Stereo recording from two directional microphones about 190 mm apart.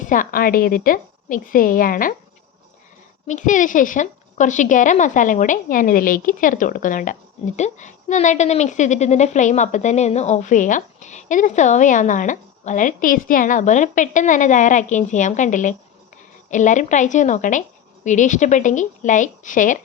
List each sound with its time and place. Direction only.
0.1 s a woman's voice: 45° left (ahead or behind)
3.2 s a woman's voice: 40° left (ahead or behind)